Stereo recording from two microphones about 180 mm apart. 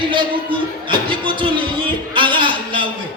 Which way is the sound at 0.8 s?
30° right (ahead or behind).